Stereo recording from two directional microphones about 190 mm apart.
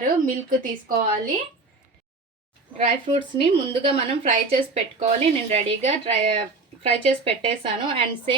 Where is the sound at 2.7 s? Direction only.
30° right (ahead or behind).